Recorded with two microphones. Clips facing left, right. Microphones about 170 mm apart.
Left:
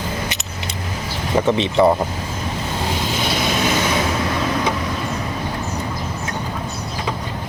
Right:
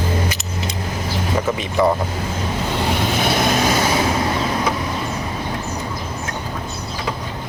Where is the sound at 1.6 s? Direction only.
25° left (ahead or behind).